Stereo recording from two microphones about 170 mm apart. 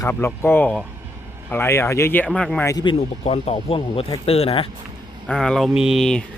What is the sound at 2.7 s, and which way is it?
Speech, 25° left (ahead or behind).